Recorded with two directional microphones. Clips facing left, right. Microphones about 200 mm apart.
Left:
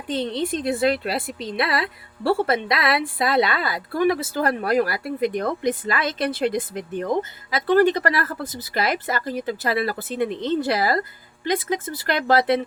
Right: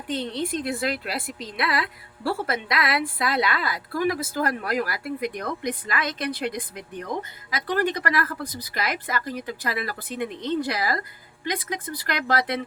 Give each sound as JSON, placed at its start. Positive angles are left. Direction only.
{"t": 0.1, "sound": "speech", "side_deg": 25}